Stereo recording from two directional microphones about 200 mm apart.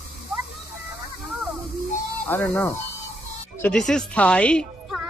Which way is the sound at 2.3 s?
10° left (ahead or behind).